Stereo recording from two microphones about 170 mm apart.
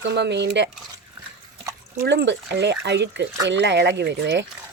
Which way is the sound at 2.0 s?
90° right.